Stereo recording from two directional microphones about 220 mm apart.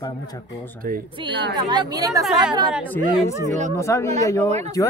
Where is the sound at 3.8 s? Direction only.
15° left (ahead or behind).